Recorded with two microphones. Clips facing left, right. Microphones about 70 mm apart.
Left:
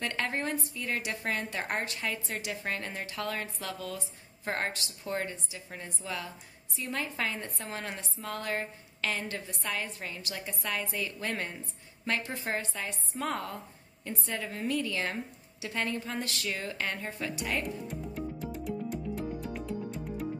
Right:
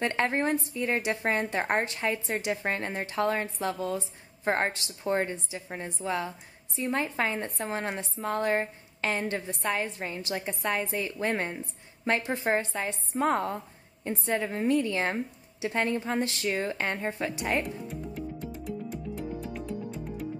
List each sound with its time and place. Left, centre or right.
0.0 s speech: right